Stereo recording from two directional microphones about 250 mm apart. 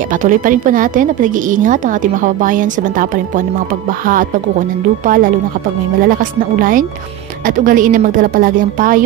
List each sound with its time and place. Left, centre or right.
0.1 s a woman's voice: right
6.6 s a woman's voice: right